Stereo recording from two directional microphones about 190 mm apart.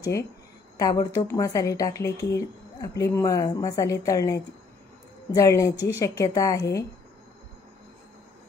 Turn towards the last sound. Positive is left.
turn(degrees=15)  # may be behind; listen again after turning